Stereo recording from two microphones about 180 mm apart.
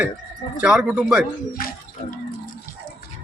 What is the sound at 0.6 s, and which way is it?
Speech, 5° right (ahead or behind).